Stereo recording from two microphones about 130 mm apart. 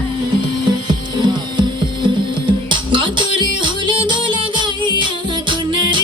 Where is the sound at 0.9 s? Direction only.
35° right (ahead or behind).